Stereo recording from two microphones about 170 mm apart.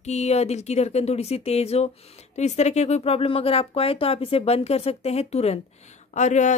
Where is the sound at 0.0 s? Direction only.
40° left (ahead or behind).